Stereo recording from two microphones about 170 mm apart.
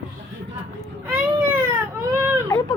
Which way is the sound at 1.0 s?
15° right (ahead or behind).